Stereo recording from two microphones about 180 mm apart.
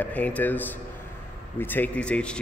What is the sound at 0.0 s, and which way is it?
Speech, 10° left (ahead or behind).